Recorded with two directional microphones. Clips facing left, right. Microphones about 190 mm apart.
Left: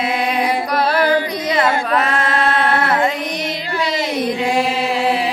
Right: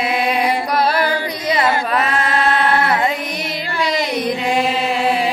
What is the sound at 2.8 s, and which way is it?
Carnatic music, 10° right (ahead or behind).